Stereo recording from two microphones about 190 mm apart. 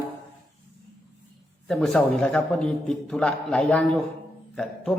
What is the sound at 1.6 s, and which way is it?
A man's voice, 5° left (ahead or behind).